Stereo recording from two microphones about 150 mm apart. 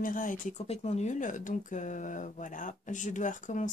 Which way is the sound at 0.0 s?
60° left (ahead or behind).